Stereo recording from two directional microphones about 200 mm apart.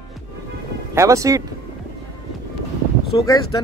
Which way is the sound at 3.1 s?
15° left (ahead or behind).